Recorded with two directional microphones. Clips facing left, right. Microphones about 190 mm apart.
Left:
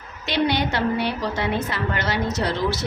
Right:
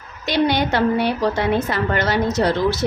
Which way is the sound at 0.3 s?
45° right (ahead or behind).